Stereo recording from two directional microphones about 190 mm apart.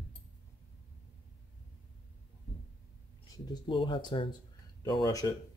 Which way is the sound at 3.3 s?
25° left (ahead or behind).